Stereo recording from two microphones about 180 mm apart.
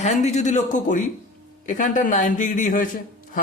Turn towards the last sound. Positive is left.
turn(degrees=50)  # may be behind; listen again after turning